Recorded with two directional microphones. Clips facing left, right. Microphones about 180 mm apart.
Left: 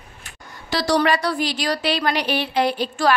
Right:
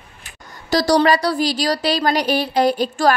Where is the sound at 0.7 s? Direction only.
40° right (ahead or behind).